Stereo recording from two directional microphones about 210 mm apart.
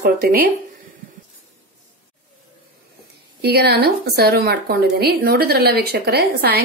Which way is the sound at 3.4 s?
50° right (ahead or behind).